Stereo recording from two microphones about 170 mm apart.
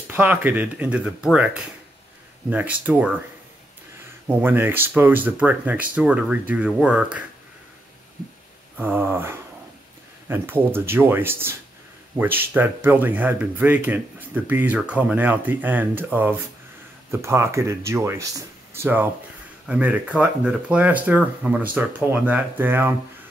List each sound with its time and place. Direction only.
0.1 s speech: 10° right (ahead or behind)
4.3 s speech: 10° right (ahead or behind)
8.7 s speech: 10° right (ahead or behind)